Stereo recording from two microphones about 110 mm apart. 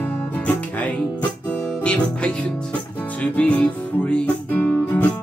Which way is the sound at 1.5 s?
10° left (ahead or behind).